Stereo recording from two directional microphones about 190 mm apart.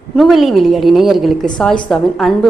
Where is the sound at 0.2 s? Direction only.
Centre (ahead or behind).